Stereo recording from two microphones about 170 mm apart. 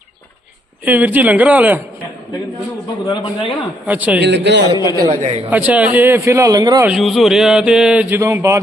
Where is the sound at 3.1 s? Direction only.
30° left (ahead or behind).